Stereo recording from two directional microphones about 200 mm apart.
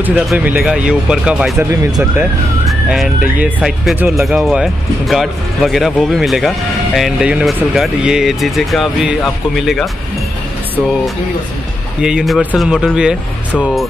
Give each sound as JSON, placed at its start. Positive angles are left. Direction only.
{"t": 0.0, "sound": "speech", "side_deg": -5}
{"t": 3.3, "sound": "speech", "side_deg": -5}
{"t": 12.0, "sound": "speech", "side_deg": -5}